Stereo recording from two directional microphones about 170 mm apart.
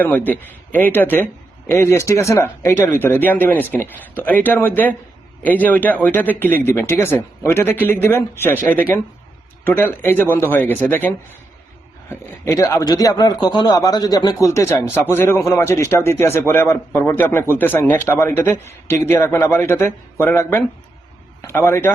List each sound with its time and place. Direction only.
0.0 s a man's voice: 10° left (ahead or behind)